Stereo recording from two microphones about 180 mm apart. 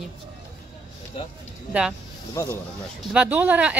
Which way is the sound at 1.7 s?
5° right (ahead or behind).